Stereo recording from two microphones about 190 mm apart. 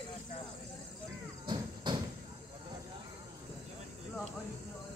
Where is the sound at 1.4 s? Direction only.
25° right (ahead or behind).